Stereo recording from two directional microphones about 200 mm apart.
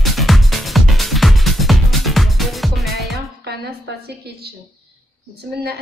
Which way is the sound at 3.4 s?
55° right (ahead or behind).